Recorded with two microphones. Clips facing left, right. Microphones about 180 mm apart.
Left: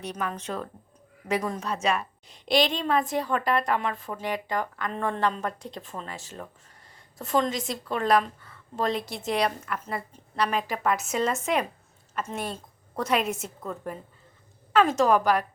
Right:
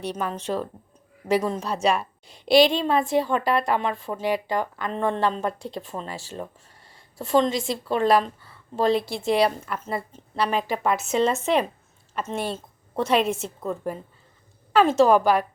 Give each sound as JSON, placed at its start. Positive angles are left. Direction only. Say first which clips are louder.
{"t": 0.0, "sound": "a woman's voice", "louder": "right 4 dB", "side_deg": -30}